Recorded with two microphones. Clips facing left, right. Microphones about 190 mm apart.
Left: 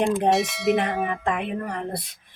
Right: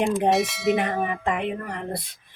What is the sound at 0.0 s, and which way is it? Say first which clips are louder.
Speech: even; centre (ahead or behind).